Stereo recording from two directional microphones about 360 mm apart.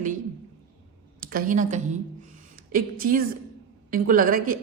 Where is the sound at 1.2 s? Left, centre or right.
Right.